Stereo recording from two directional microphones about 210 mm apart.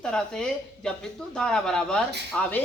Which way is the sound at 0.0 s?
5° left (ahead or behind).